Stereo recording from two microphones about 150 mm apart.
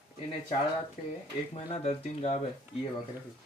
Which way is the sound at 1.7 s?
45° left (ahead or behind).